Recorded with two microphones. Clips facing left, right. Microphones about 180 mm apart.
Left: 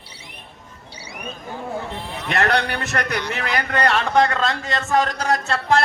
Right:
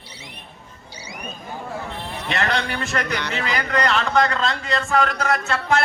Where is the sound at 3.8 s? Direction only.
50° left (ahead or behind); by 5.8 s 35° left (ahead or behind).